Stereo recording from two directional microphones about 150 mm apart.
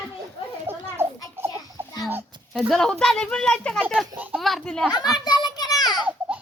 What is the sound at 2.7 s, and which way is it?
Speech, 5° left (ahead or behind).